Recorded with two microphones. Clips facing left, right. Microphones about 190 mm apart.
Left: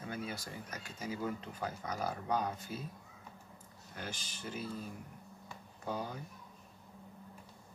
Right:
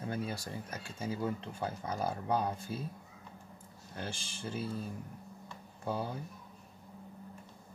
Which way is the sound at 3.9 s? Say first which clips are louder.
Right 3 dB; 30° right (ahead or behind).